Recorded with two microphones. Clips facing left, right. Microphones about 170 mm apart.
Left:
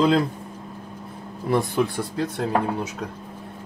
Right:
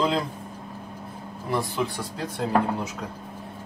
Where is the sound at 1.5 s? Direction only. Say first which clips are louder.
Left 5 dB; 60° left (ahead or behind).